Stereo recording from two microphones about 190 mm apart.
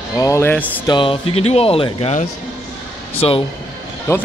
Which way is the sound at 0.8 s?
25° left (ahead or behind).